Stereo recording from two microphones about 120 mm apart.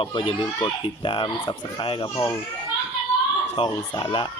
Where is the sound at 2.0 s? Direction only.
25° left (ahead or behind).